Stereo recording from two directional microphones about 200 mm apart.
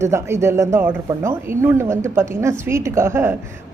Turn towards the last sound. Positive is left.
turn(degrees=-10)  # may be behind; listen again after turning